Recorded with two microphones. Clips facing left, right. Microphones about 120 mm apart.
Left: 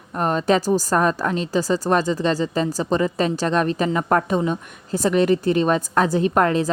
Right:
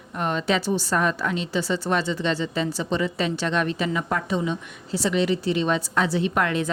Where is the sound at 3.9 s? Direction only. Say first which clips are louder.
Left 6 dB; 50° left (ahead or behind).